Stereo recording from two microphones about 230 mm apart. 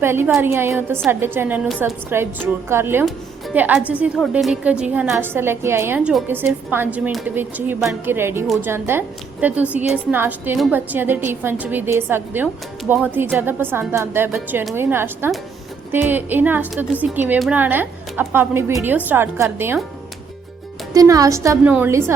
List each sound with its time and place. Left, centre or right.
0.0 s a woman's voice: centre
20.9 s a woman's voice: centre